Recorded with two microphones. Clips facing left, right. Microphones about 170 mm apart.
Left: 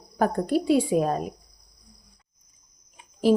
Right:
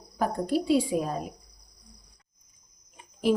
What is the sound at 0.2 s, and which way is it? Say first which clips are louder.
Speech: left 4 dB; 55° left (ahead or behind).